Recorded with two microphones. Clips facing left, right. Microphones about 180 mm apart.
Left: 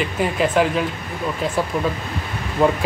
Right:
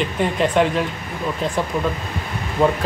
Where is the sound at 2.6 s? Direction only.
5° left (ahead or behind).